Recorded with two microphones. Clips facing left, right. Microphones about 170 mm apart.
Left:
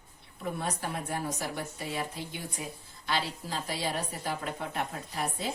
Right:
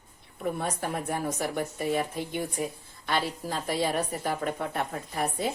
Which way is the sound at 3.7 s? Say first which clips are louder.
Right 7 dB; 55° right (ahead or behind).